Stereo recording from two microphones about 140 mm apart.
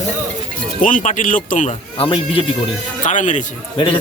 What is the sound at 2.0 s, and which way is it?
Speech, 40° left (ahead or behind).